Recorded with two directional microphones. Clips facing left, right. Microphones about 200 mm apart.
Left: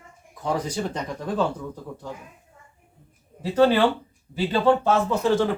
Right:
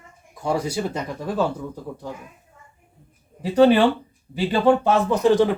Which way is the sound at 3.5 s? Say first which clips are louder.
Right 3 dB; 15° right (ahead or behind).